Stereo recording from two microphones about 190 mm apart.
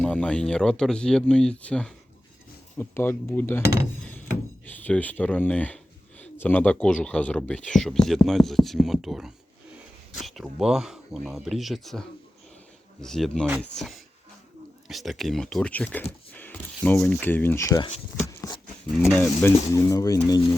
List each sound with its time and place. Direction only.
0.0 s speech: 5° left (ahead or behind)
4.6 s speech: 10° left (ahead or behind)
18.3 s a sound: 20° left (ahead or behind)
18.9 s speech: centre (ahead or behind); by 20.4 s 20° left (ahead or behind)